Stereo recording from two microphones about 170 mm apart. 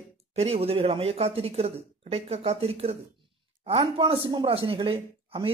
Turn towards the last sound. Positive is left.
turn(degrees=-30)  # may be behind; listen again after turning